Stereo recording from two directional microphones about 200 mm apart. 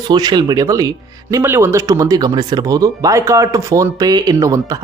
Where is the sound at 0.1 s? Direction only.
20° right (ahead or behind).